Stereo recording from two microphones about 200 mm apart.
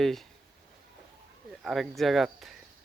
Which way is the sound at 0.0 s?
Centre (ahead or behind).